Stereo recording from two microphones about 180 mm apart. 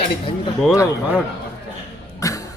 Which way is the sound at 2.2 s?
20° left (ahead or behind).